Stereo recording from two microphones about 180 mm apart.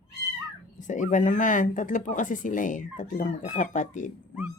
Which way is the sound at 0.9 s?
45° left (ahead or behind).